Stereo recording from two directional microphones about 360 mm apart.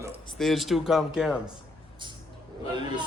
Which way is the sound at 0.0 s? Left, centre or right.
Centre.